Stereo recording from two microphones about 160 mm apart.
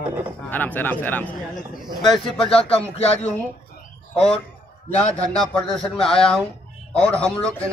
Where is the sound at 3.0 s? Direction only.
40° left (ahead or behind).